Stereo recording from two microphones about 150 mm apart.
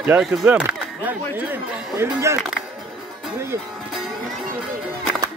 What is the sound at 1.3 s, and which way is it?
Speech, 10° right (ahead or behind).